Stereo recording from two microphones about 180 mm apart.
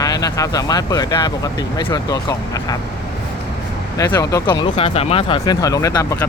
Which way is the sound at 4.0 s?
20° left (ahead or behind).